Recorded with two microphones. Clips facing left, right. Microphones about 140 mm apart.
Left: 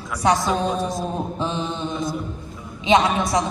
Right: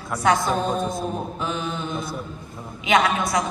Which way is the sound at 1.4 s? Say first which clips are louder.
Left 2 dB; 25° left (ahead or behind).